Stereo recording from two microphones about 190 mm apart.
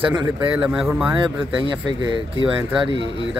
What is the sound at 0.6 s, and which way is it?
Speech, 5° right (ahead or behind).